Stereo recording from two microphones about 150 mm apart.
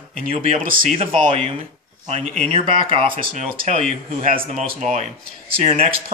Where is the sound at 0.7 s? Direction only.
65° right (ahead or behind).